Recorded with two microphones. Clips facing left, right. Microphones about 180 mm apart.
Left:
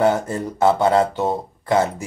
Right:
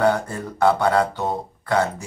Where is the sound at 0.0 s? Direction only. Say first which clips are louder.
Left 2 dB; 20° left (ahead or behind).